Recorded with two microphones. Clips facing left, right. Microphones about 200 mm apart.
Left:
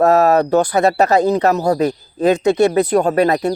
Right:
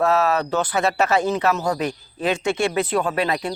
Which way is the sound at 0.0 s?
40° left (ahead or behind).